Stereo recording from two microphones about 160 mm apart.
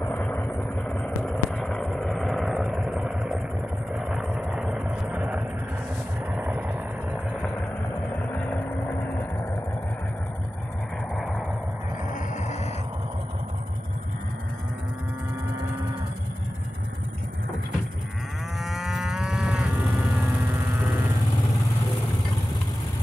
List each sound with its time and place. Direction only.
0.0 s vehicle: 10° left (ahead or behind)
0.8 s a sound: 5° left (ahead or behind)
3.9 s vehicle: 5° right (ahead or behind)
8.3 s vehicle: 10° left (ahead or behind)
11.1 s a sound: 5° right (ahead or behind)
12.1 s vehicle: 45° left (ahead or behind)
18.6 s moo: centre (ahead or behind)